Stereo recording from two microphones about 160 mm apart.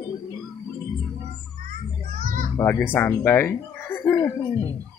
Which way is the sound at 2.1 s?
60° right (ahead or behind).